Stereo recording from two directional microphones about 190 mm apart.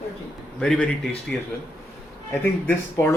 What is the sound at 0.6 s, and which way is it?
Speech, 5° left (ahead or behind).